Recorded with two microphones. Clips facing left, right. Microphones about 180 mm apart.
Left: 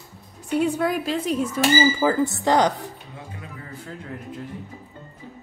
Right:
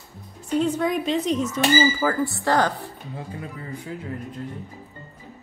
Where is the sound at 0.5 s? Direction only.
10° left (ahead or behind).